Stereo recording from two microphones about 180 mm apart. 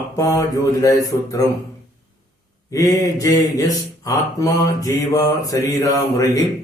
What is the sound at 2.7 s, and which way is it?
Speech, 20° left (ahead or behind).